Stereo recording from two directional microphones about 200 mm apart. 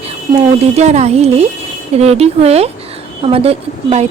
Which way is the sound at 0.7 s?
35° right (ahead or behind).